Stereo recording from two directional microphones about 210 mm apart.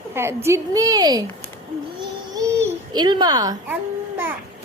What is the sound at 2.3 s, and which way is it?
Babbling, 20° right (ahead or behind).